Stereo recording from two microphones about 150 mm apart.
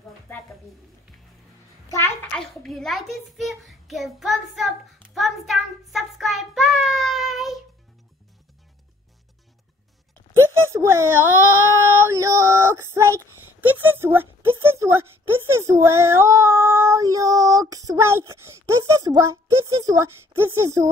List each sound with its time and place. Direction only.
2.3 s a child's voice: centre (ahead or behind)
5.1 s child singing: centre (ahead or behind)
10.3 s a sound: 15° right (ahead or behind)
11.7 s child singing: 15° right (ahead or behind)